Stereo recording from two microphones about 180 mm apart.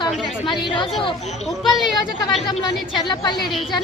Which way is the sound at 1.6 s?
Centre (ahead or behind).